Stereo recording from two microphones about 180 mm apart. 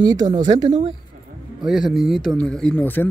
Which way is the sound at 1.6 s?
Centre (ahead or behind).